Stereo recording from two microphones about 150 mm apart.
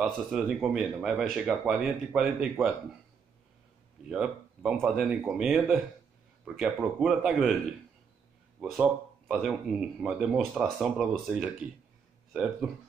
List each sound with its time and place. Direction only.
0.0 s speech: centre (ahead or behind)
4.1 s speech: 5° right (ahead or behind)
8.6 s speech: 5° right (ahead or behind)